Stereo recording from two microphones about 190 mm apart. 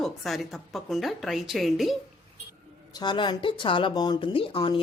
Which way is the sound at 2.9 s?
25° left (ahead or behind).